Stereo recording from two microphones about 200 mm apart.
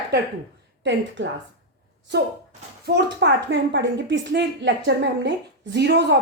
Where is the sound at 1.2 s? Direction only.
65° right (ahead or behind).